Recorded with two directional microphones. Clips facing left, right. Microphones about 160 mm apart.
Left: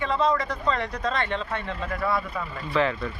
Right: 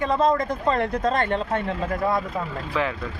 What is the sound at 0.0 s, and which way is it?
Speech, 45° right (ahead or behind).